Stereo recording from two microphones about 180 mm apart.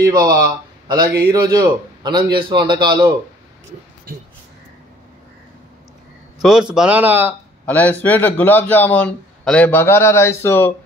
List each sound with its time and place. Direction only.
0.0 s a man's voice: 20° right (ahead or behind)
4.1 s speech: 55° right (ahead or behind)
6.7 s a man's voice: 5° right (ahead or behind)
7.6 s a man's voice: 10° left (ahead or behind)